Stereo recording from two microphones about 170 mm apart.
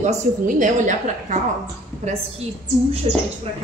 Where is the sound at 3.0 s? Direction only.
40° right (ahead or behind).